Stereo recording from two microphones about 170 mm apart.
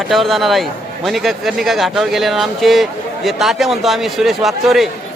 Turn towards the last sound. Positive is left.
turn(degrees=0)  # may be behind; listen again after turning